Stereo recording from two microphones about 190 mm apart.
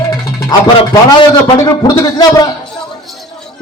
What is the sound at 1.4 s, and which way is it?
Speech, 20° left (ahead or behind).